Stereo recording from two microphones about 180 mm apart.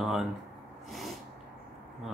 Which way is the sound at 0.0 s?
Centre (ahead or behind).